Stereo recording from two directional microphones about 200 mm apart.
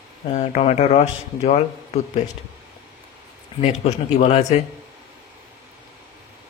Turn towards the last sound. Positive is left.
turn(degrees=35)  # may be behind; listen again after turning